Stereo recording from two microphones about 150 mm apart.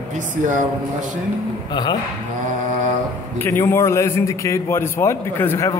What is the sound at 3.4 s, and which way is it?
A man's voice, 15° left (ahead or behind).